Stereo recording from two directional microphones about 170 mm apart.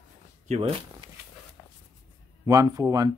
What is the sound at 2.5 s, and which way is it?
Speech, 20° right (ahead or behind).